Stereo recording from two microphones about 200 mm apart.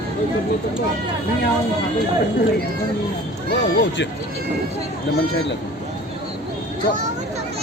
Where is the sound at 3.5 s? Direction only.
60° left (ahead or behind).